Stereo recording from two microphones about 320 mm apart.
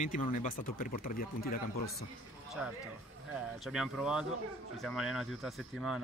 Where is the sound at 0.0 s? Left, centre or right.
Left.